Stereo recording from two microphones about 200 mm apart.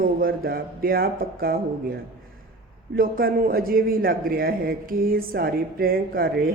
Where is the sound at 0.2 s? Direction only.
45° right (ahead or behind).